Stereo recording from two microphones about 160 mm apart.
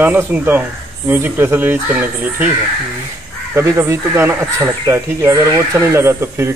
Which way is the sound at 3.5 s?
15° right (ahead or behind).